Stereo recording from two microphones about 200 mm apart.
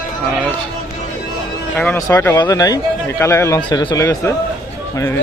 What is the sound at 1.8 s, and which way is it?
A man's voice, 10° left (ahead or behind).